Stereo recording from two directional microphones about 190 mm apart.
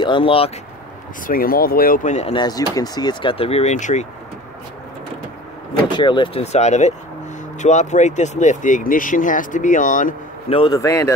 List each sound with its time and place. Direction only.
0.0 s speech: 25° left (ahead or behind)
1.2 s speech: 50° left (ahead or behind)
2.3 s speech: 20° left (ahead or behind); by 4.1 s 40° left (ahead or behind)
5.9 s speech: 25° left (ahead or behind); by 10.1 s 45° left (ahead or behind)
10.5 s speech: 25° left (ahead or behind)
10.8 s speech: 15° left (ahead or behind)